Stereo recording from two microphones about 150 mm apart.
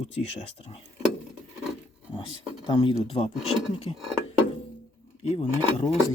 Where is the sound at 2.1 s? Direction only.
30° left (ahead or behind).